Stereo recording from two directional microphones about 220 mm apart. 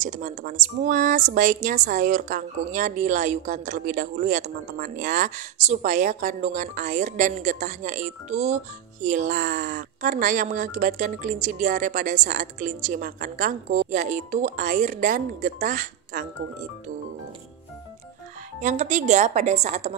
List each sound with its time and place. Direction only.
0.0 s speech: 35° right (ahead or behind)
18.6 s speech: 35° right (ahead or behind)